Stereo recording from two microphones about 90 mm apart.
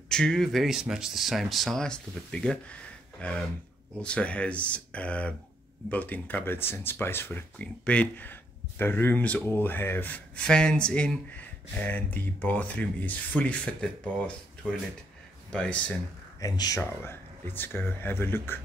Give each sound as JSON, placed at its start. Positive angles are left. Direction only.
{"t": 0.1, "sound": "speech", "side_deg": 5}
{"t": 7.5, "sound": "speech", "side_deg": 15}
{"t": 16.3, "sound": "speech", "side_deg": 40}
{"t": 16.8, "sound": "speech", "side_deg": 30}